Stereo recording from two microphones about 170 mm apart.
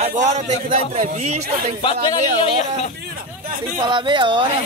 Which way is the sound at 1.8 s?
30° left (ahead or behind).